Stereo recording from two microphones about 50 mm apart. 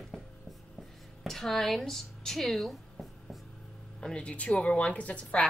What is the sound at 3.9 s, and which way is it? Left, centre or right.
A woman's voice, centre.